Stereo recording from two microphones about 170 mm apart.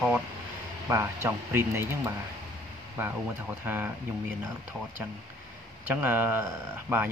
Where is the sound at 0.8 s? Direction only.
15° right (ahead or behind).